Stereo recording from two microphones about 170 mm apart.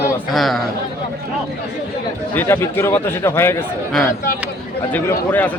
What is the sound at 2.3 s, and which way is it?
Speech, 15° left (ahead or behind).